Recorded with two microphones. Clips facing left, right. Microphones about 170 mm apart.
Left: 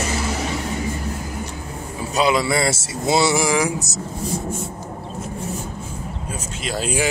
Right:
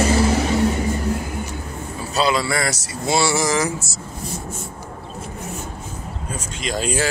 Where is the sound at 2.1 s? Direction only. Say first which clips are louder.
Left 2 dB; 20° left (ahead or behind).